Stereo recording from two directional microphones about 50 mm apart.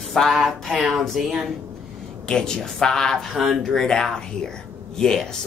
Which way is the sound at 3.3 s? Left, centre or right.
Centre.